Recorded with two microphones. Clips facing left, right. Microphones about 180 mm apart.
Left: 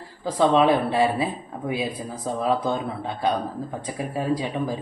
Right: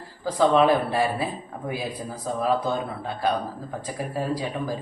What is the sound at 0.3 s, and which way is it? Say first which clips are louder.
Speech: even; 25° left (ahead or behind).